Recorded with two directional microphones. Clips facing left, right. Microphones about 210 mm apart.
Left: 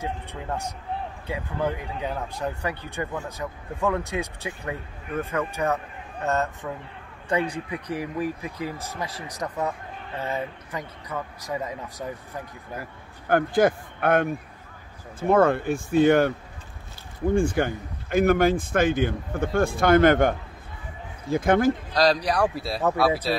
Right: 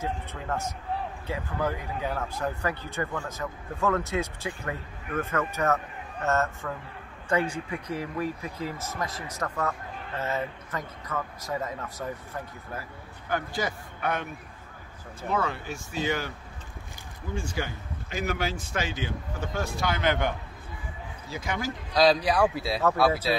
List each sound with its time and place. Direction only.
0.0 s speech: 15° left (ahead or behind)
7.7 s speech: 15° left (ahead or behind)
13.3 s a man's voice: 55° left (ahead or behind)
21.9 s a man's voice: centre (ahead or behind)